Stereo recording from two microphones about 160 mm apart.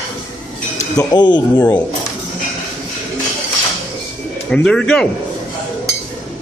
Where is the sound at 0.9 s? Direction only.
25° left (ahead or behind).